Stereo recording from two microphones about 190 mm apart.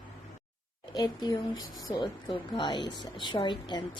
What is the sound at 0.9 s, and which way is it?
Speech, 20° left (ahead or behind).